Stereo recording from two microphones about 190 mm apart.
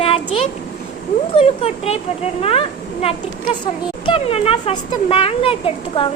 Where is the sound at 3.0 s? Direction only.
30° left (ahead or behind).